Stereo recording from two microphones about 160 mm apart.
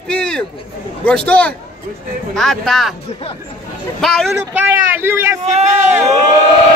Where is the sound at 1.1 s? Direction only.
5° left (ahead or behind).